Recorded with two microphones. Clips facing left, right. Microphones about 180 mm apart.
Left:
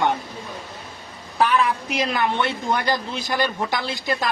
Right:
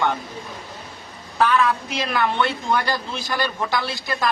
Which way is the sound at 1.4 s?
15° left (ahead or behind).